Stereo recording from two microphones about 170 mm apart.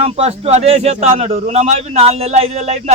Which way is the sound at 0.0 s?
35° right (ahead or behind).